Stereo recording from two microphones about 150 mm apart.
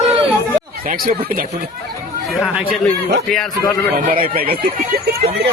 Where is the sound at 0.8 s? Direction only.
65° right (ahead or behind).